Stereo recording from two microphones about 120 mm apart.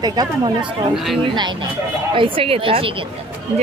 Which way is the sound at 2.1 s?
45° right (ahead or behind).